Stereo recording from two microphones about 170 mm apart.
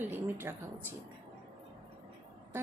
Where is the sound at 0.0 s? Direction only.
10° right (ahead or behind).